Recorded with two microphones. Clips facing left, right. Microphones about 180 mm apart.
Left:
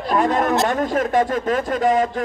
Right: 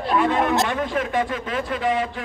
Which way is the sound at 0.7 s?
45° left (ahead or behind).